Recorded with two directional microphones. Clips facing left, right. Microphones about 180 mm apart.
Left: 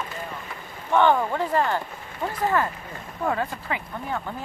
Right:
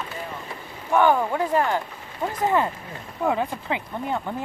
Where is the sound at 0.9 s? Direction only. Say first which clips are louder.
Right 1 dB; 10° right (ahead or behind).